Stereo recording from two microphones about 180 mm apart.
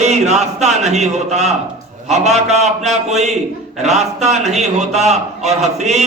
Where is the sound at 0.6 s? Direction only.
40° right (ahead or behind).